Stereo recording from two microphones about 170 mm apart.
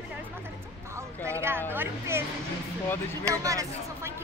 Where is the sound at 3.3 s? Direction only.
20° right (ahead or behind).